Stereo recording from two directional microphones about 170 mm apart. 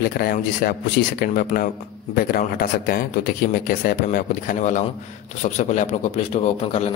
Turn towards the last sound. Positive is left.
turn(degrees=35)  # may be behind; listen again after turning